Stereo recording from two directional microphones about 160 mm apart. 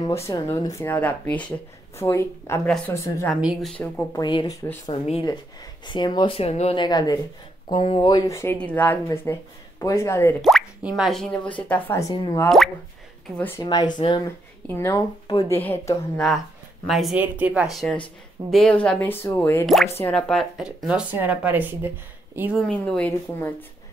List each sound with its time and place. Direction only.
0.1 s speech: 15° left (ahead or behind)
3.3 s speech: 5° right (ahead or behind)
3.7 s speech: 5° left (ahead or behind)
4.1 s speech: 25° left (ahead or behind)
11.0 s speech: centre (ahead or behind)
12.4 s speech: centre (ahead or behind)
13.4 s speech: 15° left (ahead or behind)
13.7 s speech: 25° left (ahead or behind)
14.2 s speech: 15° left (ahead or behind)
16.8 s speech: centre (ahead or behind)
19.6 s speech: centre (ahead or behind)
22.7 s speech: 5° left (ahead or behind)